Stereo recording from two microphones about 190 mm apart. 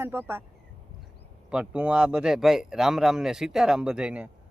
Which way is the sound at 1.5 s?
5° right (ahead or behind).